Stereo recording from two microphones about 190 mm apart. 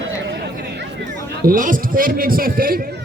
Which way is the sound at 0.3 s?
60° right (ahead or behind).